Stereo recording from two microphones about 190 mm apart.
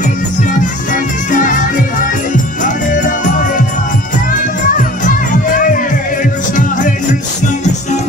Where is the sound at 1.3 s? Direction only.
45° left (ahead or behind).